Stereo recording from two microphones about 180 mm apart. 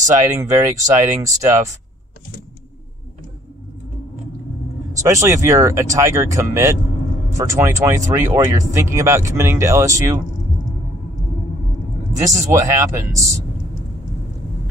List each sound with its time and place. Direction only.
0.3 s speech: 15° right (ahead or behind)
5.0 s speech: 15° right (ahead or behind)
12.2 s speech: 15° right (ahead or behind)